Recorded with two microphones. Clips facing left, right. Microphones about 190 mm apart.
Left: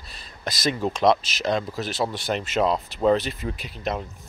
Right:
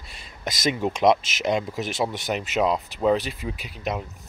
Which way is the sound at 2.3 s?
10° right (ahead or behind).